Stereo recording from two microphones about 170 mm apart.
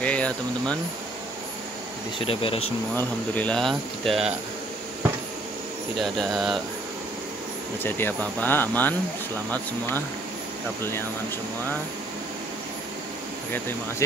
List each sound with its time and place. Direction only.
0.0 s speech: 5° left (ahead or behind)
2.1 s speech: 35° left (ahead or behind)
3.0 s speech: 10° left (ahead or behind)
5.9 s speech: centre (ahead or behind)
7.8 s speech: 10° left (ahead or behind)